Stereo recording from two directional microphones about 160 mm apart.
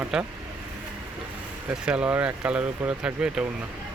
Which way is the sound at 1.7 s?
5° right (ahead or behind).